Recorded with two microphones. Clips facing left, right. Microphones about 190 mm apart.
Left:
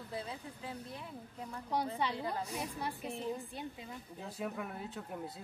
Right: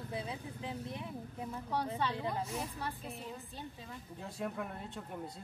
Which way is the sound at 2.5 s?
15° left (ahead or behind).